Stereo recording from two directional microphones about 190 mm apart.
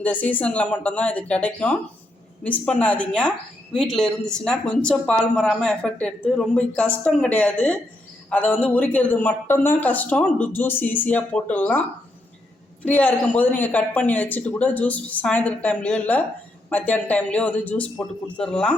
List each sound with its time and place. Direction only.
0.0 s a man's voice: 10° left (ahead or behind)
12.8 s a man's voice: 10° left (ahead or behind)